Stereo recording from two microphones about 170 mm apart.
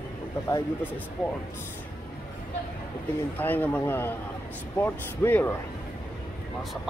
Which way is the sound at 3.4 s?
10° left (ahead or behind).